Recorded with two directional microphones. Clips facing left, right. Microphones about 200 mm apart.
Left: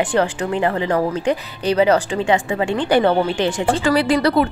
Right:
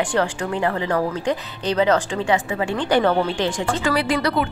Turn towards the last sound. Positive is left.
turn(degrees=35)  # may be behind; listen again after turning